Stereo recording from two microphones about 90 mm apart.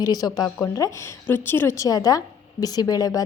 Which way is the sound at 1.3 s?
25° left (ahead or behind).